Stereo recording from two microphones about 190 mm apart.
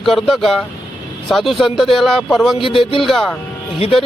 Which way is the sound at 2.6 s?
25° left (ahead or behind).